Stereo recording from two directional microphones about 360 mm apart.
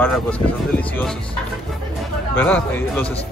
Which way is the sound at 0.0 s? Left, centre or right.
Centre.